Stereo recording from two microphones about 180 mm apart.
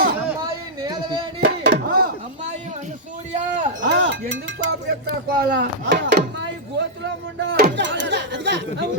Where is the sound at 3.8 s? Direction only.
85° right.